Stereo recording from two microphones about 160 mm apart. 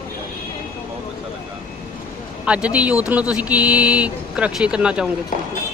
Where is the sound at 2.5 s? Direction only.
5° right (ahead or behind).